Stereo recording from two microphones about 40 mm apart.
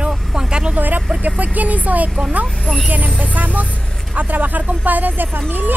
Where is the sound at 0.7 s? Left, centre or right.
Right.